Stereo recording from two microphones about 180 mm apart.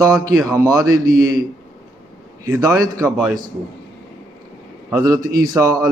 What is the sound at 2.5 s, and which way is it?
Speech, 20° right (ahead or behind).